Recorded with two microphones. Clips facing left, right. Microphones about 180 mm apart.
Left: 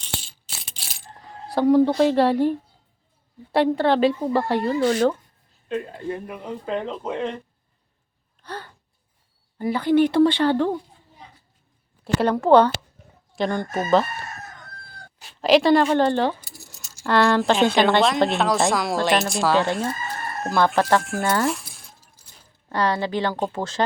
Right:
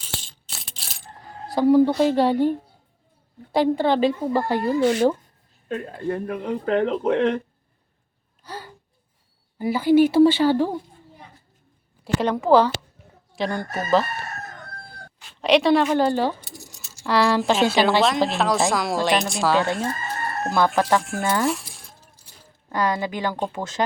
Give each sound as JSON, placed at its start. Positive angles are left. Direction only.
{"t": 0.4, "sound": "coin", "side_deg": 0}
{"t": 1.5, "sound": "speech", "side_deg": 0}
{"t": 4.8, "sound": "a woman's voice", "side_deg": -15}
{"t": 5.6, "sound": "speech", "side_deg": -50}
{"t": 8.4, "sound": "gasp", "side_deg": -5}
{"t": 9.6, "sound": "speech", "side_deg": -5}
{"t": 12.2, "sound": "speech", "side_deg": 0}
{"t": 15.4, "sound": "speech", "side_deg": 0}
{"t": 21.4, "sound": "zipper", "side_deg": 0}
{"t": 22.7, "sound": "a woman's voice", "side_deg": -20}